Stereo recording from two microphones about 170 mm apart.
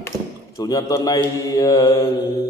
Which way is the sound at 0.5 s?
20° left (ahead or behind).